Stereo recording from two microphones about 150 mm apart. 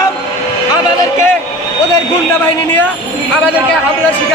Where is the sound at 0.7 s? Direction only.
25° left (ahead or behind).